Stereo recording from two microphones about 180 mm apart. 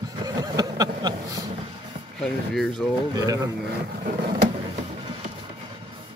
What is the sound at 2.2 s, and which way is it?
Speech, 5° left (ahead or behind).